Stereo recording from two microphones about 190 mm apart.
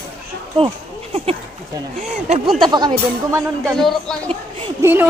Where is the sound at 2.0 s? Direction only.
35° right (ahead or behind).